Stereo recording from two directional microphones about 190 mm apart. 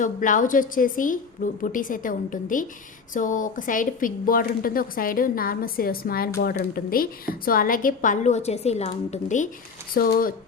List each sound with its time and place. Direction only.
0.0 s speech: 45° left (ahead or behind)
9.9 s speech: 50° left (ahead or behind)